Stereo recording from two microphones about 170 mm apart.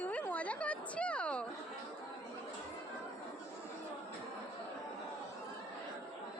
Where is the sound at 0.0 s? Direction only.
10° left (ahead or behind).